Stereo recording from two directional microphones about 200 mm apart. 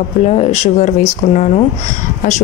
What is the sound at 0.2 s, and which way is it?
A woman's voice, 30° left (ahead or behind).